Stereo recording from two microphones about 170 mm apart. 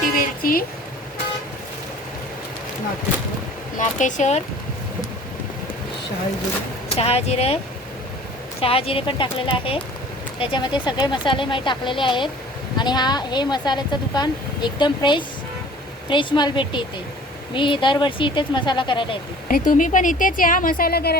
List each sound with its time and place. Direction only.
0.4 s speech: 55° left (ahead or behind)
3.8 s speech: 45° left (ahead or behind)
6.9 s speech: 35° left (ahead or behind)
8.6 s speech: 35° left (ahead or behind)
19.5 s speech: 55° left (ahead or behind)